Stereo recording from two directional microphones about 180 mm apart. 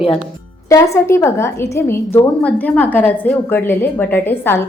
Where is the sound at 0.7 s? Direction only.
15° left (ahead or behind).